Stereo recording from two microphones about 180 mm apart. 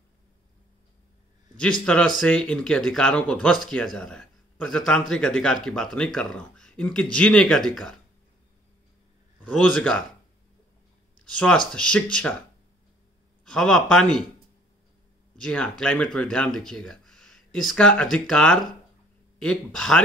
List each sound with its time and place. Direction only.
1.6 s speech: 5° left (ahead or behind)
9.4 s speech: 5° left (ahead or behind)
11.2 s speech: 5° left (ahead or behind)
13.5 s speech: 5° left (ahead or behind)
15.3 s speech: 5° left (ahead or behind)